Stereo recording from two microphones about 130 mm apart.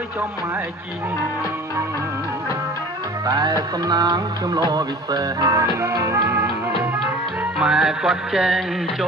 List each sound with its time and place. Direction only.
3.2 s music: 30° right (ahead or behind)
7.6 s music: 5° right (ahead or behind)